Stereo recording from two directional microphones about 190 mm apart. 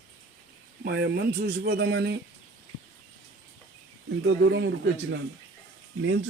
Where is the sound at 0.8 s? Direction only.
60° right (ahead or behind).